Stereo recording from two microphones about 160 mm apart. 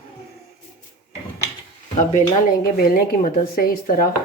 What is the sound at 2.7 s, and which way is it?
Speech, 65° left (ahead or behind).